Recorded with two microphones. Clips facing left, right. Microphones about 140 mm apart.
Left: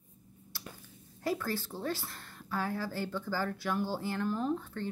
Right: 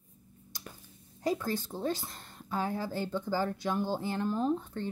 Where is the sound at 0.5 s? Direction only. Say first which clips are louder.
Even; 20° right (ahead or behind).